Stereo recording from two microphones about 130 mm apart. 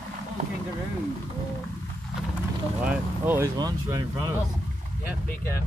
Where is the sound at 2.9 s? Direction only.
15° right (ahead or behind).